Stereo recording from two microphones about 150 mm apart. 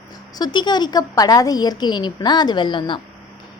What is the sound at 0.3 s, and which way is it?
A woman's voice, 30° left (ahead or behind).